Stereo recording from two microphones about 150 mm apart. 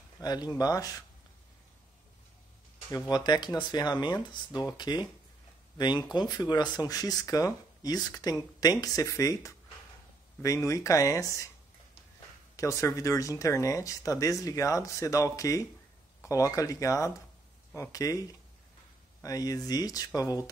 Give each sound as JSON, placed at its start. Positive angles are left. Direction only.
{"t": 0.2, "sound": "speech", "side_deg": 25}
{"t": 2.9, "sound": "speech", "side_deg": 25}
{"t": 12.5, "sound": "speech", "side_deg": 20}
{"t": 19.2, "sound": "speech", "side_deg": 25}